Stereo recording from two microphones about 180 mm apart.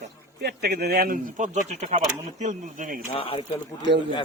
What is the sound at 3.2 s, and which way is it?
Speech, 30° left (ahead or behind).